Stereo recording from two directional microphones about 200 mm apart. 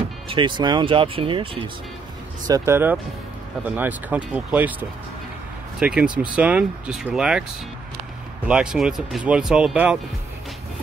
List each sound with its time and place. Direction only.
0.3 s speech: 25° right (ahead or behind)
2.4 s speech: 15° right (ahead or behind)
8.5 s speech: 5° right (ahead or behind)